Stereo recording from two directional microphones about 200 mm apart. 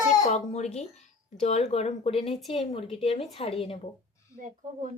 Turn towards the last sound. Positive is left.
turn(degrees=-40)  # may be behind; listen again after turning